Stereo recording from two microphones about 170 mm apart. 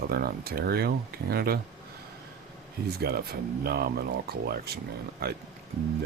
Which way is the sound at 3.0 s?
65° right (ahead or behind).